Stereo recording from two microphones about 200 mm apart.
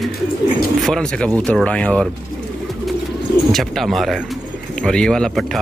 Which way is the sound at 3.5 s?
Centre (ahead or behind).